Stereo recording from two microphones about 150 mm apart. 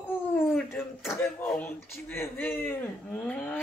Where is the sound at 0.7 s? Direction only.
15° left (ahead or behind).